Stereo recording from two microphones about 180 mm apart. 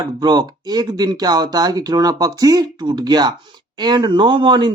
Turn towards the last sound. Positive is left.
turn(degrees=-25)  # may be behind; listen again after turning